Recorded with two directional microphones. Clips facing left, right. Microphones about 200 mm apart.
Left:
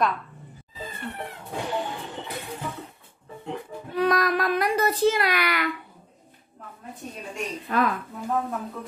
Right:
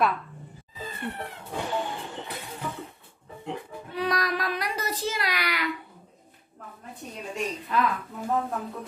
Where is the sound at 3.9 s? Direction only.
50° left (ahead or behind).